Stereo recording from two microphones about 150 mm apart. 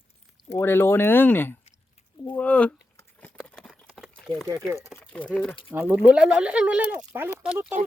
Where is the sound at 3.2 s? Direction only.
5° left (ahead or behind).